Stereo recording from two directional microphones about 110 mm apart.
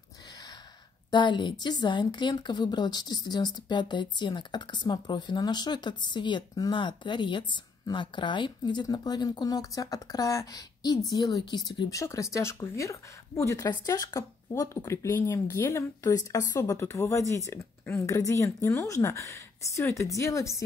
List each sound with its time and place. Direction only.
1.1 s speech: 45° left (ahead or behind); by 20.4 s 30° left (ahead or behind)